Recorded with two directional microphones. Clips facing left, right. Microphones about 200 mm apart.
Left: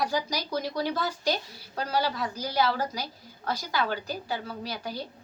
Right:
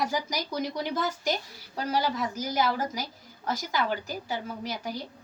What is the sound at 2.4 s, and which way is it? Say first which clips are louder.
Speech: left 2 dB; 20° right (ahead or behind).